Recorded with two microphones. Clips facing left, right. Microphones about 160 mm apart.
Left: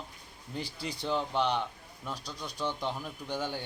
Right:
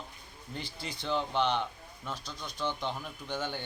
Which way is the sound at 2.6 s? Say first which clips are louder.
Even; 5° left (ahead or behind).